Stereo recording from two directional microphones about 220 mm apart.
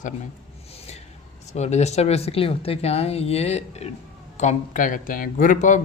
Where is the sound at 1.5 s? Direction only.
30° left (ahead or behind).